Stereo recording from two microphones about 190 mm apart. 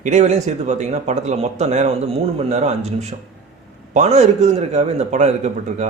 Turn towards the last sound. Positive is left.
turn(degrees=-35)  # may be behind; listen again after turning